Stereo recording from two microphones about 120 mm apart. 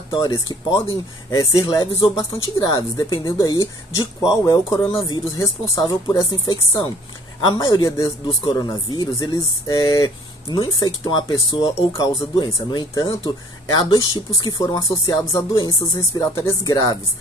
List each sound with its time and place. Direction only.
0.1 s speech: 35° left (ahead or behind)
16.1 s speech: 25° left (ahead or behind)